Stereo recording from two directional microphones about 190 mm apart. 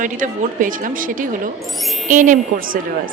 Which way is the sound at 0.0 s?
45° right (ahead or behind).